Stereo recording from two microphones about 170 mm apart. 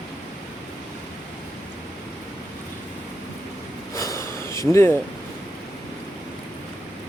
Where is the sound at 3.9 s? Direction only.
20° left (ahead or behind).